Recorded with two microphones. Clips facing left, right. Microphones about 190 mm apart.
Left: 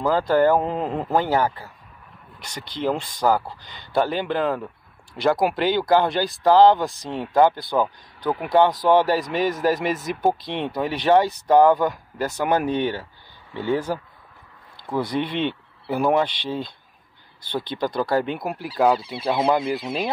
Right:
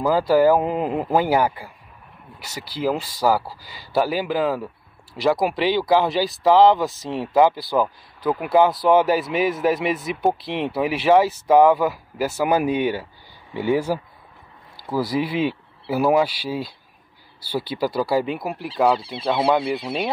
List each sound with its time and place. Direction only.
0.0 s speech: 10° right (ahead or behind)
18.9 s speech: 30° right (ahead or behind)
19.7 s speech: centre (ahead or behind)